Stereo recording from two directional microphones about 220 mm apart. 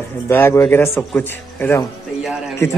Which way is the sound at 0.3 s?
10° left (ahead or behind).